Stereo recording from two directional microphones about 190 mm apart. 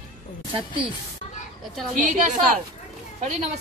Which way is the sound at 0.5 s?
25° right (ahead or behind).